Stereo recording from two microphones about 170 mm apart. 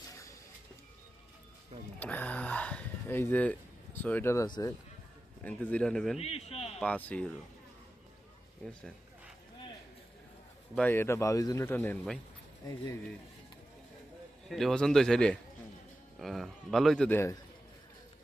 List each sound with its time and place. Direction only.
2.0 s speech: 10° left (ahead or behind)
5.4 s speech: 10° left (ahead or behind)
6.1 s a man's voice: 35° left (ahead or behind)
6.7 s speech: 10° left (ahead or behind)
8.6 s speech: 5° left (ahead or behind)
10.8 s speech: 10° left (ahead or behind)
14.5 s speech: centre (ahead or behind)